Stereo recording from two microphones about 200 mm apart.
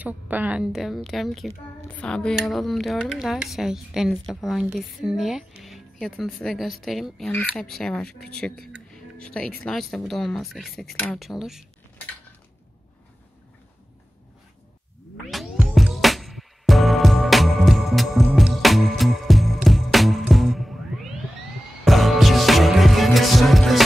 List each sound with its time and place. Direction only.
0.0 s speech: 10° right (ahead or behind)
15.3 s music: centre (ahead or behind)
21.8 s music: centre (ahead or behind)